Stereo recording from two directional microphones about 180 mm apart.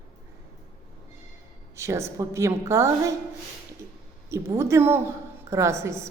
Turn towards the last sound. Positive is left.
turn(degrees=-15)  # may be behind; listen again after turning